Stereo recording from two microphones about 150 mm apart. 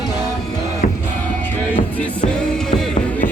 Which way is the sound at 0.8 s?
65° left (ahead or behind).